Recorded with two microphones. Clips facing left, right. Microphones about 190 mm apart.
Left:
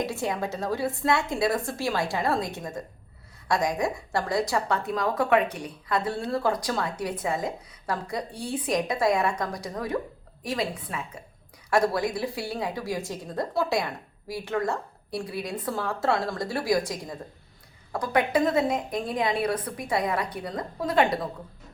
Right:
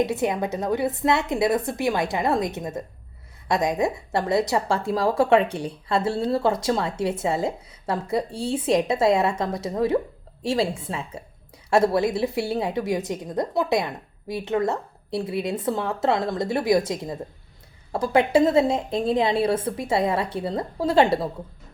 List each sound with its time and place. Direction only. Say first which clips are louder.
0.0 s a woman's voice: right 5 dB; 20° right (ahead or behind)